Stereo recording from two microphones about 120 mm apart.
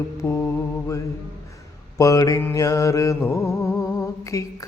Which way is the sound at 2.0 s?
30° left (ahead or behind).